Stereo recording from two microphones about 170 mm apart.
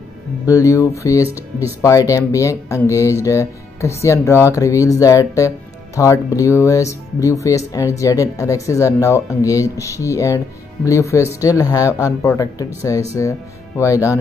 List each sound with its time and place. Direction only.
0.5 s speech: 20° left (ahead or behind)
1.2 s speech: 10° right (ahead or behind)
1.8 s speech: 20° left (ahead or behind)